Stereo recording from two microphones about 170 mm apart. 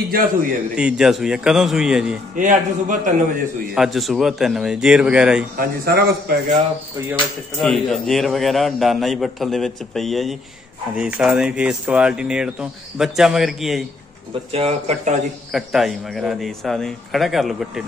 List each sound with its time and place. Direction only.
0.1 s a man's voice: 60° right (ahead or behind)
0.7 s speech: 5° right (ahead or behind)
2.3 s a man's voice: 50° right (ahead or behind)
3.7 s speech: centre (ahead or behind)
5.6 s a man's voice: 65° right (ahead or behind)
7.5 s speech: 5° left (ahead or behind)
14.5 s speech: 40° right (ahead or behind)
15.5 s speech: centre (ahead or behind)